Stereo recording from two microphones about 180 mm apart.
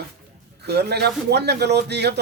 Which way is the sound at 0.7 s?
65° right (ahead or behind).